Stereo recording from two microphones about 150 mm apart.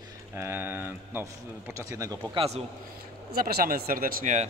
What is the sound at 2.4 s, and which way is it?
Speech, 45° right (ahead or behind).